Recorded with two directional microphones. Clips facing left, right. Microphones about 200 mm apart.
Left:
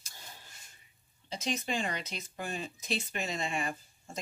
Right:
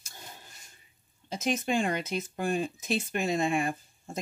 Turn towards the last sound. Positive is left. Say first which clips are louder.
# right 8 dB
turn(degrees=-50)  # may be behind; listen again after turning